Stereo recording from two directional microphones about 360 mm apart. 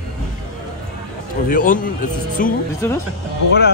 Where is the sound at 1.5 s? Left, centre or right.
Left.